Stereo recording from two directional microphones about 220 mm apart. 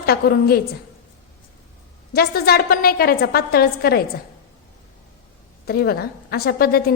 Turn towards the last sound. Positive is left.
turn(degrees=45)  # may be behind; listen again after turning